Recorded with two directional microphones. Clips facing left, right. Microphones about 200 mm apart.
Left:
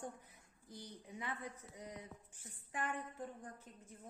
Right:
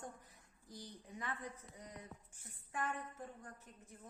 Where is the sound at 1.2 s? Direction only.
15° left (ahead or behind).